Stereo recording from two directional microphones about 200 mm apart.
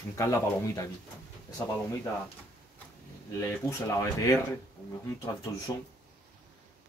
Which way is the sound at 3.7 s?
15° left (ahead or behind).